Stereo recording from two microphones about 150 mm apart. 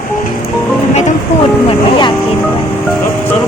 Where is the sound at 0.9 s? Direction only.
50° left (ahead or behind).